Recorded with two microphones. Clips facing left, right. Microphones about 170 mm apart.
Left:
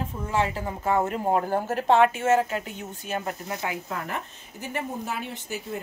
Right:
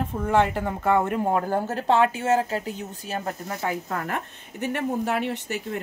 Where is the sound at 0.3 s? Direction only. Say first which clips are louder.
Right 5 dB; 60° right (ahead or behind).